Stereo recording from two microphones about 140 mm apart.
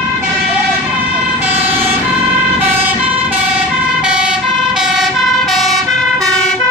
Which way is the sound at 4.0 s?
5° right (ahead or behind).